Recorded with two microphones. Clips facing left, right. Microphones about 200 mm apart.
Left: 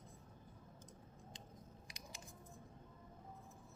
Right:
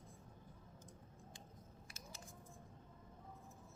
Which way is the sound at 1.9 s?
15° left (ahead or behind).